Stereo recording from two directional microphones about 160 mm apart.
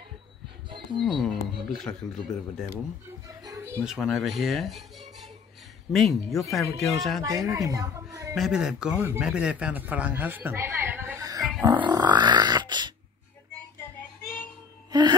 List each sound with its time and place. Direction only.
0.9 s speech: centre (ahead or behind)
3.4 s a sound: 15° right (ahead or behind)
3.8 s speech: 5° right (ahead or behind)
7.2 s a woman's voice: 20° right (ahead or behind)
8.4 s speech: 5° right (ahead or behind); by 11.4 s 20° right (ahead or behind)
11.6 s grunt: 25° right (ahead or behind)
14.9 s music: 25° right (ahead or behind)